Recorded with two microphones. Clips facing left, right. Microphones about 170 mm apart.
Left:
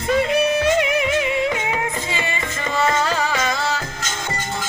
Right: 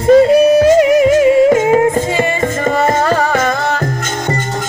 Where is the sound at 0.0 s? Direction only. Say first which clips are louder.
Right 11 dB; 40° right (ahead or behind); by 3.8 s 55° right (ahead or behind).